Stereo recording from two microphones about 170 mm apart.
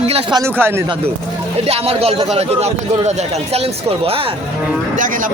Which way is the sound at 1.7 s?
35° right (ahead or behind).